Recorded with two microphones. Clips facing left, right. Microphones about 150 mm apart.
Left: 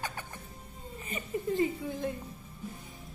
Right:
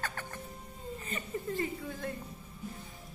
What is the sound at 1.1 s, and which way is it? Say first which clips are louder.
A woman's voice: left 5 dB; 15° left (ahead or behind).